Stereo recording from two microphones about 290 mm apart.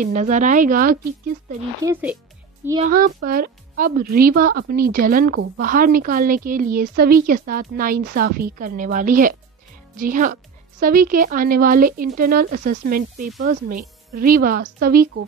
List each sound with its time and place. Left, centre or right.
0.0 s speech: right
1.8 s speech: centre
2.8 s speech: right